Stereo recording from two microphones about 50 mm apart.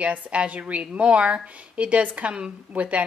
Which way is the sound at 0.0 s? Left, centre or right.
Right.